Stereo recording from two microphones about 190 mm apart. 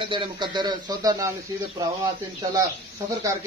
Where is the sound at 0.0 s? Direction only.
25° right (ahead or behind).